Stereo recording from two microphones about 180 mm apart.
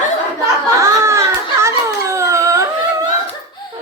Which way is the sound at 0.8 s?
15° right (ahead or behind).